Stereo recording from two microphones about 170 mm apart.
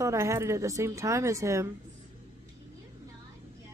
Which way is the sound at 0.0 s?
15° right (ahead or behind).